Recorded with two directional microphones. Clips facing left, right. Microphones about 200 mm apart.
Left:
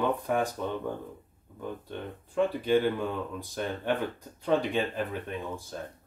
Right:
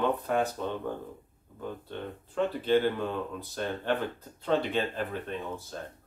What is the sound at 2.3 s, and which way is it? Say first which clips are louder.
Speech: left 1 dB; 10° left (ahead or behind).